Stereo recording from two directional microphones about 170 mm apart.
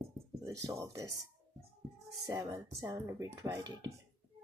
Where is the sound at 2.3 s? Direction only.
20° right (ahead or behind).